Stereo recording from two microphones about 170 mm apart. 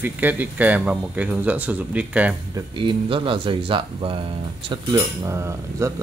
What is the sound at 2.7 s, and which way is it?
Speech, 30° right (ahead or behind).